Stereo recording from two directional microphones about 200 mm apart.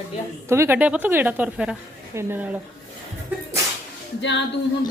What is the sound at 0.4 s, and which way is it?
A woman's voice, 15° right (ahead or behind).